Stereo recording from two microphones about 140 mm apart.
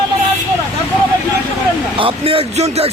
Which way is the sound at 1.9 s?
40° right (ahead or behind).